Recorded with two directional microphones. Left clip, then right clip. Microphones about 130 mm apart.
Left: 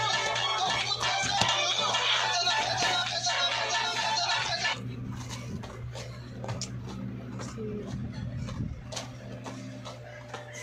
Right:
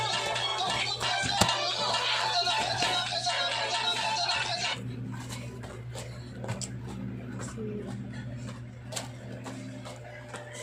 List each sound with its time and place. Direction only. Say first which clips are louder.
0.0 s music: left 2 dB; 35° right (ahead or behind)